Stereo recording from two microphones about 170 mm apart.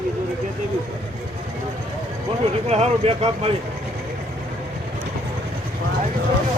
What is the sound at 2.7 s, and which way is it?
Speech, 40° right (ahead or behind).